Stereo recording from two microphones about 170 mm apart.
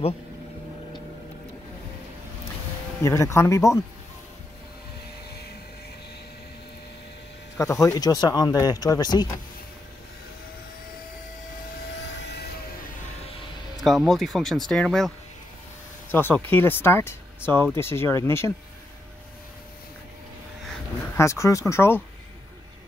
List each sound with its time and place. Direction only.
3.0 s speech: 15° left (ahead or behind)
7.5 s speech: 20° left (ahead or behind)
13.8 s speech: centre (ahead or behind); by 18.5 s 15° left (ahead or behind)
21.2 s speech: 15° left (ahead or behind)